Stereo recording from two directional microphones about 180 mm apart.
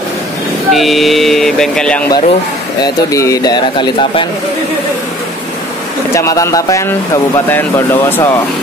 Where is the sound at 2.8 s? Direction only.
20° left (ahead or behind).